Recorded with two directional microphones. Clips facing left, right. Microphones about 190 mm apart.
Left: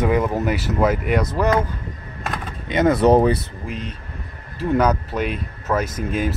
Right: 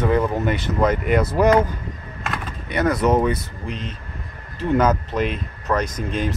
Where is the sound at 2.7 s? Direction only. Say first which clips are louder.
Left 4 dB; 20° left (ahead or behind).